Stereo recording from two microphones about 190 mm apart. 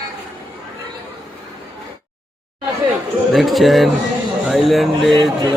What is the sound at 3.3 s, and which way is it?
Speech, centre (ahead or behind).